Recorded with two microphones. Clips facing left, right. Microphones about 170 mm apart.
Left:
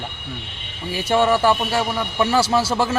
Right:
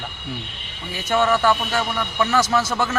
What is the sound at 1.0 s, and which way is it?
Speech, 30° left (ahead or behind).